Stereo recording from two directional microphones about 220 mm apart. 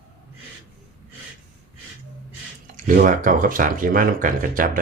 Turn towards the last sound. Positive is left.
turn(degrees=-40)  # may be behind; listen again after turning